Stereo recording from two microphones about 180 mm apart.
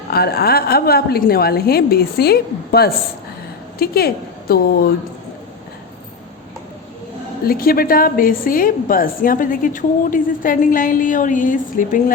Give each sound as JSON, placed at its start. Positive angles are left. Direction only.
{"t": 0.1, "sound": "a woman's voice", "side_deg": 60}
{"t": 7.4, "sound": "a woman's voice", "side_deg": 55}